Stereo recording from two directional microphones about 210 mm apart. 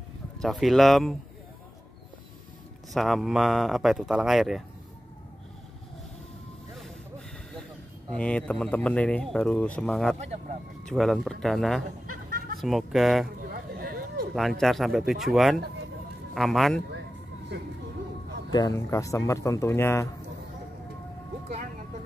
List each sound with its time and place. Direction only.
0.4 s speech: centre (ahead or behind)
2.9 s speech: centre (ahead or behind)
8.1 s speech: 5° left (ahead or behind)
13.4 s a sound: 45° right (ahead or behind)
14.6 s speech: centre (ahead or behind)
18.5 s speech: 15° left (ahead or behind)